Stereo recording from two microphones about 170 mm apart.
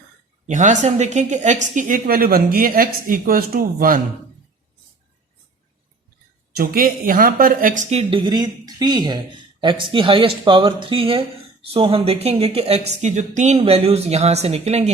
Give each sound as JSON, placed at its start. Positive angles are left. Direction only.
{"t": 0.4, "sound": "speech", "side_deg": -45}
{"t": 6.5, "sound": "speech", "side_deg": -60}